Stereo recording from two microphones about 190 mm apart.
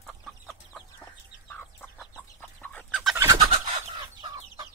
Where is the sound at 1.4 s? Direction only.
10° left (ahead or behind).